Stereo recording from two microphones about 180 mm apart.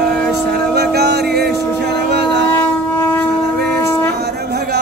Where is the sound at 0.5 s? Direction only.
65° right (ahead or behind).